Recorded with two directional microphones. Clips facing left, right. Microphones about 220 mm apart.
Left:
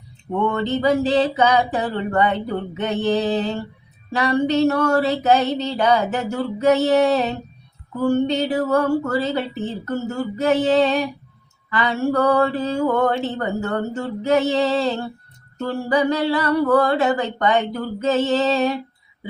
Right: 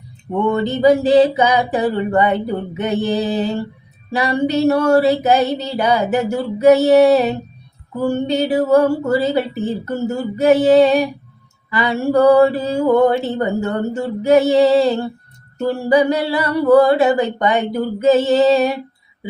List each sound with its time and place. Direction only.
0.5 s mantra: 10° right (ahead or behind)